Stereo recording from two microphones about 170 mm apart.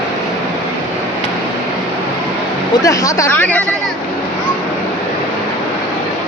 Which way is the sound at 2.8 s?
20° left (ahead or behind).